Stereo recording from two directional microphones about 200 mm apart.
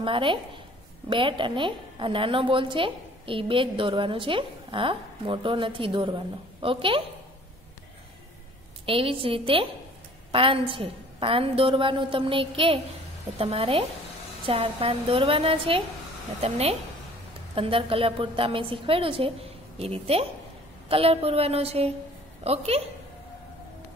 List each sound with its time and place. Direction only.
0.0 s a woman's voice: 25° right (ahead or behind)
8.8 s a woman's voice: 25° right (ahead or behind)
16.3 s a sound: 30° right (ahead or behind)
17.6 s a woman's voice: 25° right (ahead or behind)
20.9 s a sound: 30° right (ahead or behind)
22.4 s a woman's voice: 30° right (ahead or behind)